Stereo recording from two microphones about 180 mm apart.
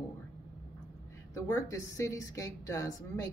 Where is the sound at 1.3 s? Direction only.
15° left (ahead or behind).